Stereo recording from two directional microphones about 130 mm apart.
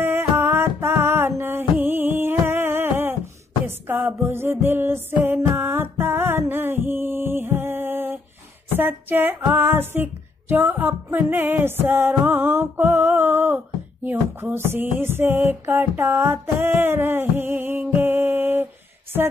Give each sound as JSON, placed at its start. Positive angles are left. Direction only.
{"t": 0.0, "sound": "music", "side_deg": -15}